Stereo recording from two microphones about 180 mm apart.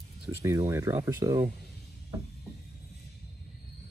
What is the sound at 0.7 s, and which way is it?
Speech, 15° right (ahead or behind).